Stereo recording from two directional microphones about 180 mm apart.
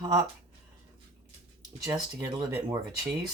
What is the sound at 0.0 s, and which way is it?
Speech, 20° right (ahead or behind).